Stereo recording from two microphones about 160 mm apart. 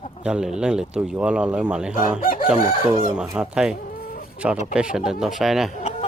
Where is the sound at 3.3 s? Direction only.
5° right (ahead or behind).